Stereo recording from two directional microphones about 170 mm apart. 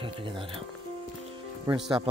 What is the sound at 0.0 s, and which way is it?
Speech, 30° right (ahead or behind).